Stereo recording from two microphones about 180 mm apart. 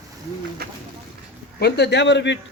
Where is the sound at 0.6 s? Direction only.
60° right (ahead or behind).